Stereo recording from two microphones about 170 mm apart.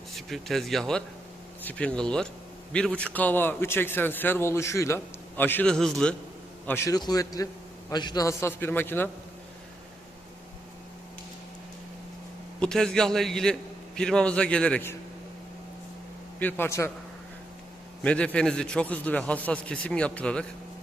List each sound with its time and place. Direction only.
0.1 s a man's voice: centre (ahead or behind)
6.7 s a man's voice: 15° left (ahead or behind)
12.5 s a man's voice: 5° left (ahead or behind)
16.4 s a man's voice: 10° left (ahead or behind)
18.0 s a man's voice: 5° left (ahead or behind)